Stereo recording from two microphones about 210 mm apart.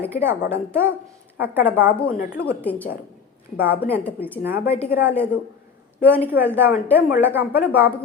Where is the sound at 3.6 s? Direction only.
10° right (ahead or behind).